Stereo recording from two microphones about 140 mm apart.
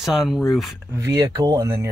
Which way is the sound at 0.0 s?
Centre (ahead or behind).